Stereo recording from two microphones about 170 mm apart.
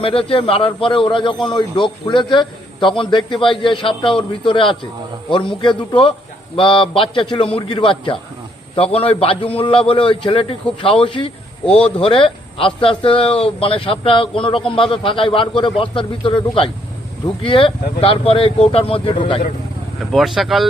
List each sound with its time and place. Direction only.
0.0 s a man's voice: 35° left (ahead or behind)
20.1 s speech: centre (ahead or behind)